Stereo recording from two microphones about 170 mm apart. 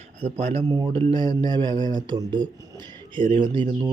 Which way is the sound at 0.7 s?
30° right (ahead or behind).